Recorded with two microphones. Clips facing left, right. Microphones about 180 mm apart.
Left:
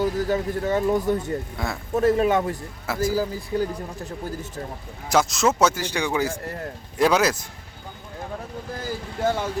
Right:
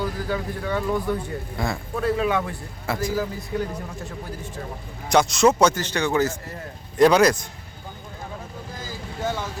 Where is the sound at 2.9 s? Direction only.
5° left (ahead or behind).